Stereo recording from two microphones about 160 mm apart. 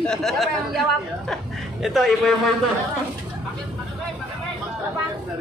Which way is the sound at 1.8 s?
Centre (ahead or behind).